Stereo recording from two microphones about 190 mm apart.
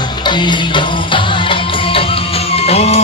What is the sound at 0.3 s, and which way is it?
Music, 25° left (ahead or behind).